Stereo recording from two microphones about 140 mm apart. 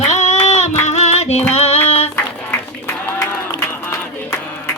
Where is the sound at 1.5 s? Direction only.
50° left (ahead or behind).